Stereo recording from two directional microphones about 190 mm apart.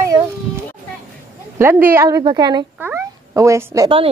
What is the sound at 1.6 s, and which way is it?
A woman's voice, 10° right (ahead or behind).